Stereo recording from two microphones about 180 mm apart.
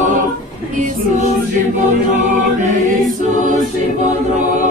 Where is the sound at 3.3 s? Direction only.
45° right (ahead or behind).